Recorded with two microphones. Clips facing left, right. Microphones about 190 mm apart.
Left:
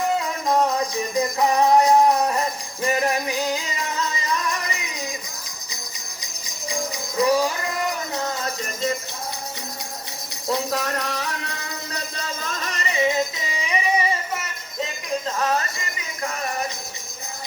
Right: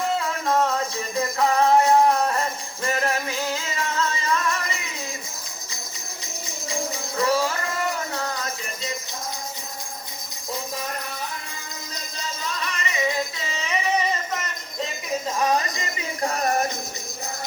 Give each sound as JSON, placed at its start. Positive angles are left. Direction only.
{"t": 0.2, "sound": "music", "side_deg": 15}
{"t": 7.2, "sound": "music", "side_deg": 15}
{"t": 8.1, "sound": "a sound", "side_deg": 25}
{"t": 10.4, "sound": "music", "side_deg": 75}
{"t": 13.1, "sound": "music", "side_deg": 15}
{"t": 15.4, "sound": "speech", "side_deg": -15}